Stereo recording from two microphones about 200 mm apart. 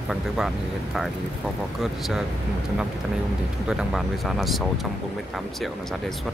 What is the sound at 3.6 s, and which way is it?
Speech, centre (ahead or behind).